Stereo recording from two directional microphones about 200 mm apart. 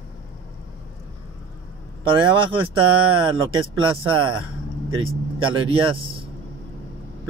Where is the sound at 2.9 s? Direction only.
90° right.